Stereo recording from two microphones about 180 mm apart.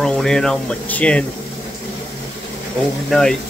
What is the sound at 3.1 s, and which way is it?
Speech, 5° left (ahead or behind).